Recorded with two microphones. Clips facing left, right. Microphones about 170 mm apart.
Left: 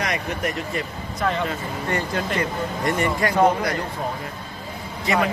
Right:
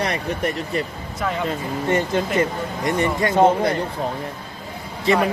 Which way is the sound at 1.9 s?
20° right (ahead or behind).